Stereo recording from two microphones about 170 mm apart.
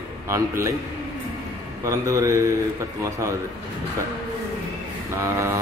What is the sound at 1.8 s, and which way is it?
Speech, 20° right (ahead or behind).